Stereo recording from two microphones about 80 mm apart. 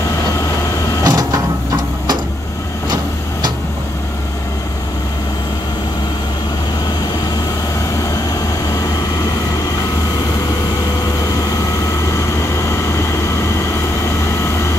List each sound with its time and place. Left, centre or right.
1.0 s printer: right